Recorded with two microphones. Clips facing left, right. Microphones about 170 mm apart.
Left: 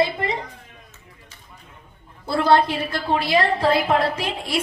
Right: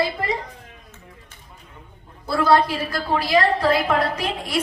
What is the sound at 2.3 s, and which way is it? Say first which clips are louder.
A woman's voice: even; 25° left (ahead or behind).